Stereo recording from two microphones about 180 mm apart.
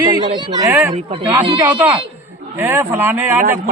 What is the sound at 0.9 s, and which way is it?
Speech, 30° right (ahead or behind).